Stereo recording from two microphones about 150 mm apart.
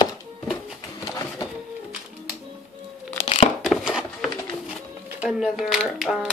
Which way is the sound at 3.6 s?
5° right (ahead or behind).